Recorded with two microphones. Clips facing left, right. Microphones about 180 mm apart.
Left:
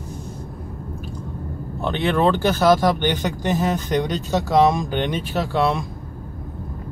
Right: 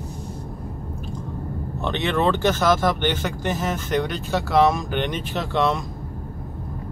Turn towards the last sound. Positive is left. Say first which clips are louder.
# left 2 dB
turn(degrees=10)  # may be behind; listen again after turning